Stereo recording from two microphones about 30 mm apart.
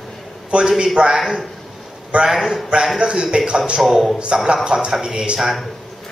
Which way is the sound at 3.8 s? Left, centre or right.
Centre.